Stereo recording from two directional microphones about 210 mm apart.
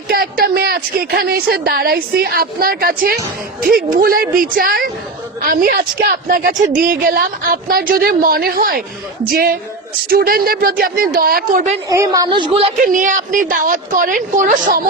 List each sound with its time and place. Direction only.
0.1 s a woman's voice: 45° right (ahead or behind)
11.9 s a woman's voice: 15° right (ahead or behind)
12.8 s a woman's voice: 40° right (ahead or behind)